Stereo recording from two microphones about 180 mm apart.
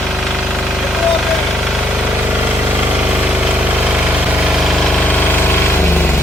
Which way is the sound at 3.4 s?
5° right (ahead or behind).